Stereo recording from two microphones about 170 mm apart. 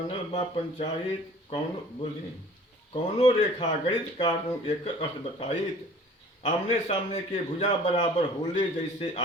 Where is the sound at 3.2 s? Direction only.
35° left (ahead or behind).